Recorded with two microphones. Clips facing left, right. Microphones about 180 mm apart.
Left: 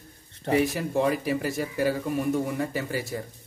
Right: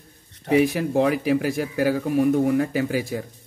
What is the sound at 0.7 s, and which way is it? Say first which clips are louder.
Speech: right 4 dB; 65° right (ahead or behind).